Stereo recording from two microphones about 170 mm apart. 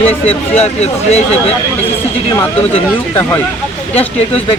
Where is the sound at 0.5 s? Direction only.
40° left (ahead or behind).